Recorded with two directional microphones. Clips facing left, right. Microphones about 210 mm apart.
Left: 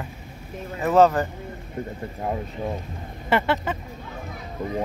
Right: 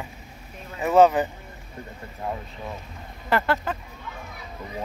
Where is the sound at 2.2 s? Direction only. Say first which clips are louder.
Left 4 dB; 30° left (ahead or behind).